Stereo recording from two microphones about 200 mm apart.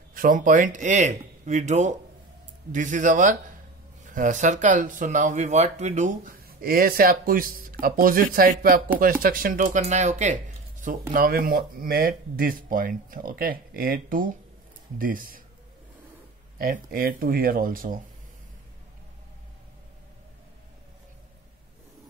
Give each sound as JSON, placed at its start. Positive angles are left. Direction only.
{"t": 0.1, "sound": "speech", "side_deg": -45}
{"t": 16.5, "sound": "speech", "side_deg": -45}